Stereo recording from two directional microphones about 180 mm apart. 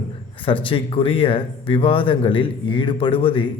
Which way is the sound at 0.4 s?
30° left (ahead or behind).